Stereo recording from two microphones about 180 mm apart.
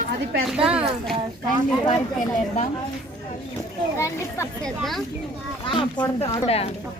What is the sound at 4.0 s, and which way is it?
Speech, 15° left (ahead or behind).